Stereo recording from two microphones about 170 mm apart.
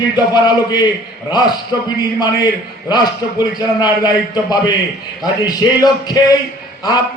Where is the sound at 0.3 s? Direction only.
25° left (ahead or behind).